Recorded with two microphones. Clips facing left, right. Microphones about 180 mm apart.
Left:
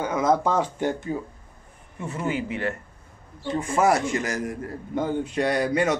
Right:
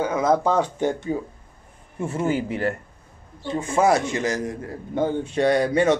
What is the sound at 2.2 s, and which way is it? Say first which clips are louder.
Speech: right 3 dB; 40° right (ahead or behind).